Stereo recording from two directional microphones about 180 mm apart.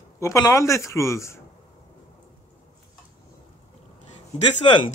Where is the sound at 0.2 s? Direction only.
20° left (ahead or behind).